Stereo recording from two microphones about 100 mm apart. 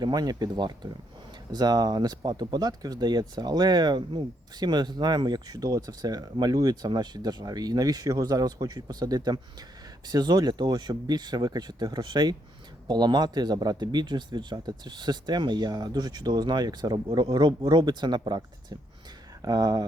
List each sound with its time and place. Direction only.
0.0 s speech: 40° right (ahead or behind)